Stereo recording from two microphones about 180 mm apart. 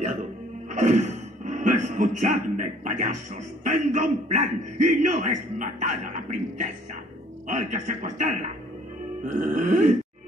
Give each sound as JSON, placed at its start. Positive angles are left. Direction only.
{"t": 0.7, "sound": "a man's voice", "side_deg": -40}